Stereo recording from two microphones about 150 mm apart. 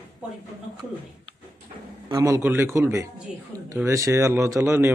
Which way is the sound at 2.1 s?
20° right (ahead or behind).